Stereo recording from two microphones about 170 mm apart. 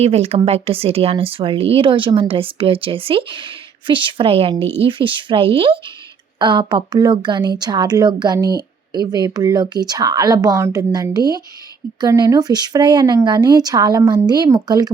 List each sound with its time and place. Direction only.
0.0 s a woman's voice: 40° right (ahead or behind)